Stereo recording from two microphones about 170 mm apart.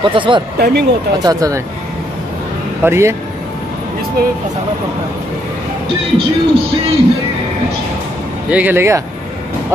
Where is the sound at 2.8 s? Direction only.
15° right (ahead or behind).